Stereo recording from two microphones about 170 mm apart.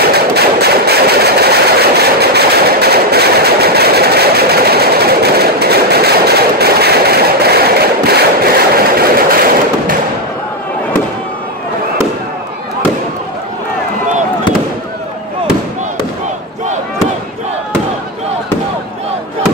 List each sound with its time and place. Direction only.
0.0 s vehicle: 70° right (ahead or behind)